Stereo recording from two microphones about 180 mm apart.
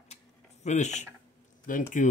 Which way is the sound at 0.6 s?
40° left (ahead or behind).